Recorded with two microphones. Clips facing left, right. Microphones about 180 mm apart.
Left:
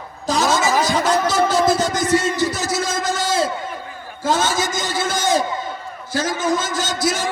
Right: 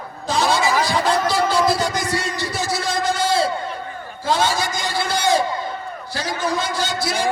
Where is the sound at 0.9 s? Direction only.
45° left (ahead or behind).